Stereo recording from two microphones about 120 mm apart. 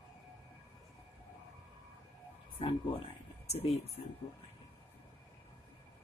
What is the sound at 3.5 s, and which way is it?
Speech, 55° left (ahead or behind).